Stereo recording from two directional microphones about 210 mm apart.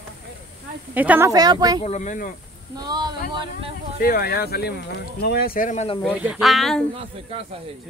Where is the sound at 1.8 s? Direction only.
35° left (ahead or behind).